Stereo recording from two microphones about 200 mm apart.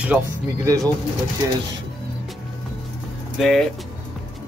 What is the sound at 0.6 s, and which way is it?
Speech, 15° right (ahead or behind).